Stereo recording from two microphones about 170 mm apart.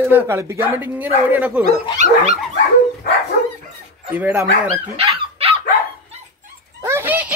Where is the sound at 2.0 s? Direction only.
40° right (ahead or behind).